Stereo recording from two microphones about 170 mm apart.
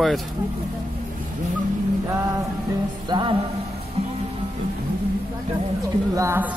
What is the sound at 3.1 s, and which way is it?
Speech, 30° right (ahead or behind).